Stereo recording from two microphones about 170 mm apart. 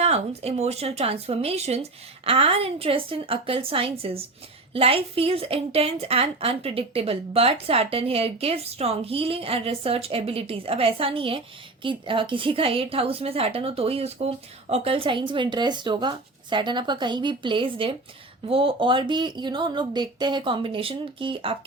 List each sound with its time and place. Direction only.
0.0 s a woman's voice: 40° right (ahead or behind)